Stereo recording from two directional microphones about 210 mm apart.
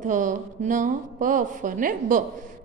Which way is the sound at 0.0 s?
35° right (ahead or behind).